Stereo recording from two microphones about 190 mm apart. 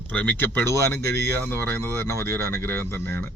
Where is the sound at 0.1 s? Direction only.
5° left (ahead or behind).